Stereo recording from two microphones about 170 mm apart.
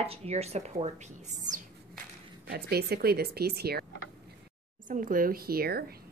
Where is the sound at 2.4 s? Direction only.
65° right (ahead or behind).